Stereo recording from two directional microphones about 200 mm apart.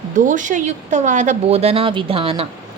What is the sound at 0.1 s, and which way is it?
A woman's voice, 40° right (ahead or behind).